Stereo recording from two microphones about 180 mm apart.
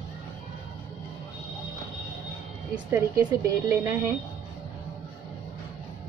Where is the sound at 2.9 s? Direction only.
15° right (ahead or behind).